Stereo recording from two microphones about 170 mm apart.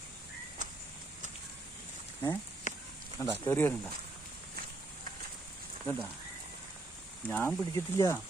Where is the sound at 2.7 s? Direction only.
45° left (ahead or behind).